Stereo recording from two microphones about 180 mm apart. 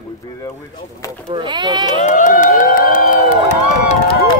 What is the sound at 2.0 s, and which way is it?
Speech, 45° left (ahead or behind).